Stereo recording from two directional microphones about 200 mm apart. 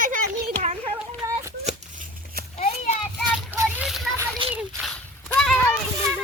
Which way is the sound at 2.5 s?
35° left (ahead or behind).